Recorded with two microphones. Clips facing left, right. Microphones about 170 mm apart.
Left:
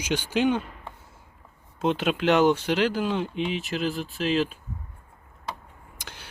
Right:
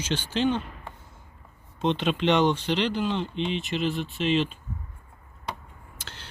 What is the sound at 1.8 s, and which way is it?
Speech, 5° left (ahead or behind).